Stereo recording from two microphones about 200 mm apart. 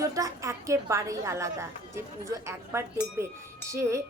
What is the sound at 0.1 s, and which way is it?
A woman's voice, 15° right (ahead or behind).